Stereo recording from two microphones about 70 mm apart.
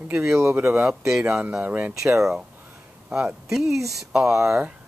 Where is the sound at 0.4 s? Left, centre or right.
Right.